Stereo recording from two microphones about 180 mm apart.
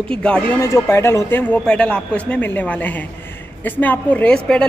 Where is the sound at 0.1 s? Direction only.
5° left (ahead or behind).